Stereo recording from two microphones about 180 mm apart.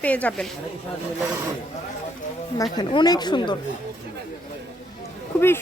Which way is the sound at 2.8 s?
25° left (ahead or behind).